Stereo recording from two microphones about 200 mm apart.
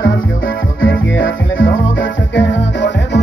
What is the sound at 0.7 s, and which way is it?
Music, 70° left (ahead or behind).